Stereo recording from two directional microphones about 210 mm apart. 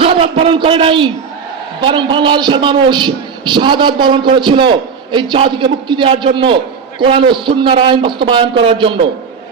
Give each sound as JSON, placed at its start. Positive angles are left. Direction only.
{"t": 0.0, "sound": "a man's voice", "side_deg": -25}